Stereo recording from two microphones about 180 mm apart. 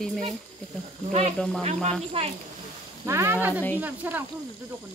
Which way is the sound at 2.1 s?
35° right (ahead or behind).